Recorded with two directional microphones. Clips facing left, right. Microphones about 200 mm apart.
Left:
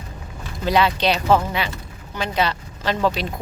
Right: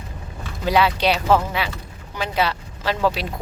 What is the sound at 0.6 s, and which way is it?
Speech, 5° right (ahead or behind).